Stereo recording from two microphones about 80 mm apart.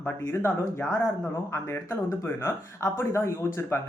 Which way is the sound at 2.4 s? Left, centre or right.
Left.